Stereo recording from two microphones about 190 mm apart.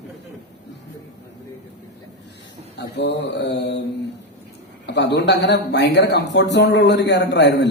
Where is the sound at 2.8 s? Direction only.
65° left (ahead or behind).